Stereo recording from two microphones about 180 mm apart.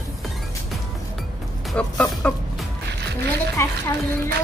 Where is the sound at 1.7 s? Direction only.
5° left (ahead or behind).